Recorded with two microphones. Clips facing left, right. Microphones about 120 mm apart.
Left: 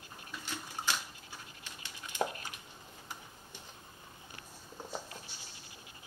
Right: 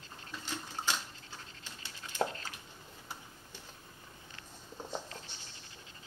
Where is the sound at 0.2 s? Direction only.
10° left (ahead or behind).